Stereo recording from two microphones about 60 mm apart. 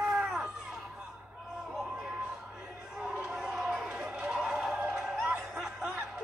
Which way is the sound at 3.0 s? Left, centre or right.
Centre.